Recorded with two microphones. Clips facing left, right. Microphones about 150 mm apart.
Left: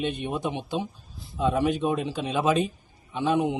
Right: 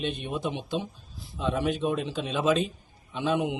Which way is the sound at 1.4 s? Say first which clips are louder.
Left 3 dB; 10° left (ahead or behind).